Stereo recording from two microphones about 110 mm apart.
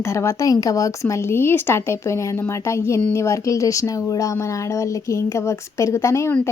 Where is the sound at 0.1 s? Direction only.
25° left (ahead or behind).